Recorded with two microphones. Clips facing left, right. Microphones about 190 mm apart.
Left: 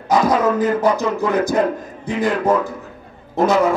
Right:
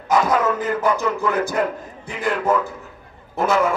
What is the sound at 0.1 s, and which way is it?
A man's voice, 35° left (ahead or behind).